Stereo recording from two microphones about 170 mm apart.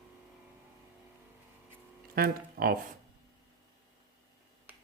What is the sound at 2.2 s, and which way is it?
Speech, 60° right (ahead or behind).